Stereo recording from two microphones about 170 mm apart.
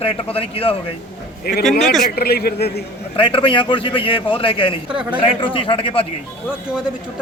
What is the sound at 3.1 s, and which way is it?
A man's voice, 30° left (ahead or behind).